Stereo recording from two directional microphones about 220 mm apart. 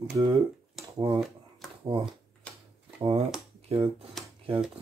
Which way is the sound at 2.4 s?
5° left (ahead or behind).